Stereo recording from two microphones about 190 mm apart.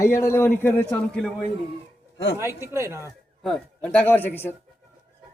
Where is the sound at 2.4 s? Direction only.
15° right (ahead or behind).